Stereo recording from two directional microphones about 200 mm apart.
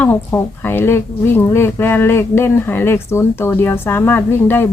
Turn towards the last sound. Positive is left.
turn(degrees=10)  # may be behind; listen again after turning